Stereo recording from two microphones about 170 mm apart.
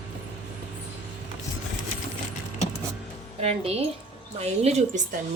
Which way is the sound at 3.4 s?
35° right (ahead or behind).